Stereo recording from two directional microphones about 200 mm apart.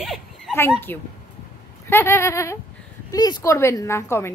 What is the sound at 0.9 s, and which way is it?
A woman's voice, 10° left (ahead or behind).